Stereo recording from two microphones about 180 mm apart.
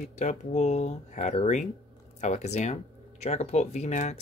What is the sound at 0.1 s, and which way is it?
Speech, 40° left (ahead or behind).